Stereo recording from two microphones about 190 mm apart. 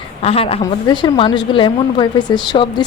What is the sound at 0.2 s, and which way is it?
A woman's voice, 30° left (ahead or behind).